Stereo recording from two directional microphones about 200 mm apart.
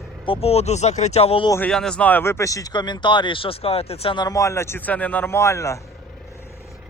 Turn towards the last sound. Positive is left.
turn(degrees=15)  # may be behind; listen again after turning